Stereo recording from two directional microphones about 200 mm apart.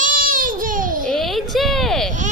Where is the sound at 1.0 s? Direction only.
Centre (ahead or behind).